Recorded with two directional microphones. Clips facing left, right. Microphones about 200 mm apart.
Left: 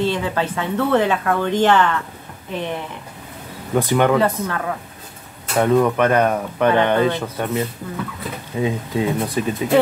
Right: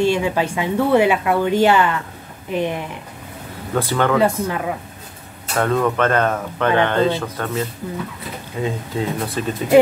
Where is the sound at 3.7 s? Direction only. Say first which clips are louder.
Left 2 dB; 15° left (ahead or behind).